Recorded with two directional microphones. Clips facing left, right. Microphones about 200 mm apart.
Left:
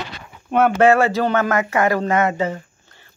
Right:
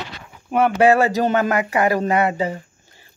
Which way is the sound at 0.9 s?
35° right (ahead or behind).